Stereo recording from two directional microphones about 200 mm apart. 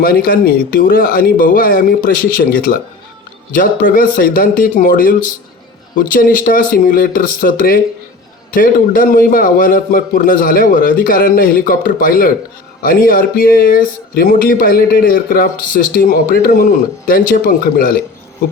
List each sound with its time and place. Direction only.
0.0 s speech: 45° left (ahead or behind)